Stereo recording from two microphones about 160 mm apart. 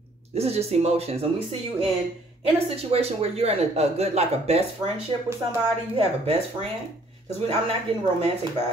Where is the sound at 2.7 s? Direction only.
40° right (ahead or behind).